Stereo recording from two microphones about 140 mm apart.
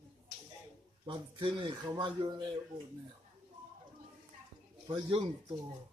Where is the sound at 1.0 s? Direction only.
35° right (ahead or behind).